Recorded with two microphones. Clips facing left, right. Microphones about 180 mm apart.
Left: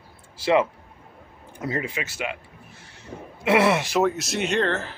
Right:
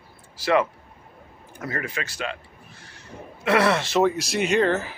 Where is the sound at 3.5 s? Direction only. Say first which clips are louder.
Left 1 dB; 15° left (ahead or behind).